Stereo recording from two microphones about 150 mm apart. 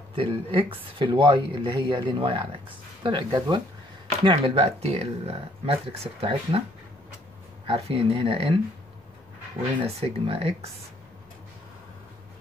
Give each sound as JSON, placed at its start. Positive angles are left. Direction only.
{"t": 0.1, "sound": "speech", "side_deg": -40}
{"t": 7.6, "sound": "speech", "side_deg": -35}
{"t": 9.9, "sound": "speech", "side_deg": -40}